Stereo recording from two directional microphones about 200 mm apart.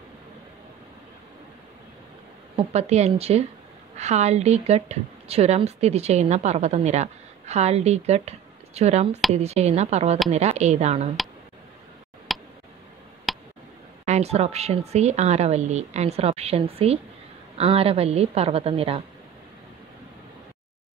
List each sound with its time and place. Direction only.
2.5 s speech: 35° right (ahead or behind)
12.3 s tick: centre (ahead or behind)
13.3 s a sound: centre (ahead or behind)
14.0 s a woman's voice: 35° right (ahead or behind)